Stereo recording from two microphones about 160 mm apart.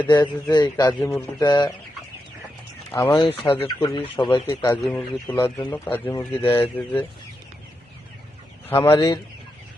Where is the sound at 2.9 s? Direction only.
15° left (ahead or behind).